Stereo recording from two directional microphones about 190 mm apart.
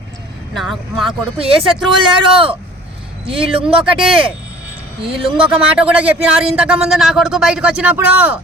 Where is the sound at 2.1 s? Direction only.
30° right (ahead or behind).